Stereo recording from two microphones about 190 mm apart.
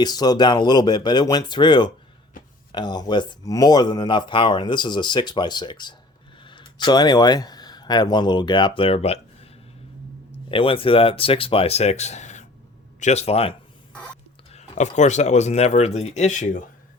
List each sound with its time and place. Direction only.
0.0 s speech: 20° left (ahead or behind)
10.5 s speech: 30° left (ahead or behind)